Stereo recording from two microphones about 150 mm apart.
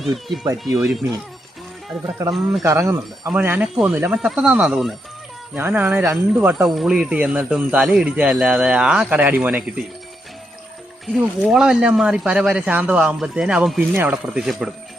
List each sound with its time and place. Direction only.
0.8 s speech: centre (ahead or behind)
2.3 s speech: centre (ahead or behind)
2.6 s speech: 20° right (ahead or behind)
11.0 s speech: centre (ahead or behind)